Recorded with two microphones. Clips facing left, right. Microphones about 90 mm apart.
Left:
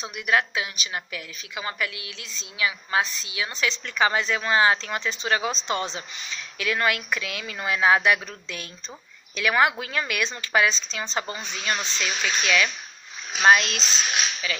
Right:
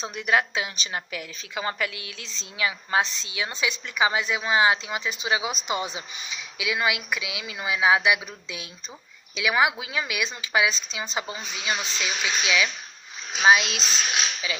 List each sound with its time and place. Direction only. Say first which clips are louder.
0.0 s a woman's voice: even; 30° right (ahead or behind)
3.6 s a woman's voice: left 1 dB; 10° right (ahead or behind)
14.4 s a woman's voice: left 1 dB; 15° right (ahead or behind)